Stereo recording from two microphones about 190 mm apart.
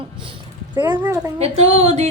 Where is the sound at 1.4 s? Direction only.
30° right (ahead or behind).